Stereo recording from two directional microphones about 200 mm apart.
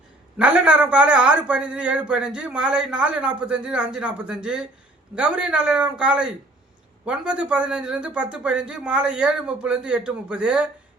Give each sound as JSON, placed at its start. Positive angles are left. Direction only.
{"t": 0.3, "sound": "a man's voice", "side_deg": -5}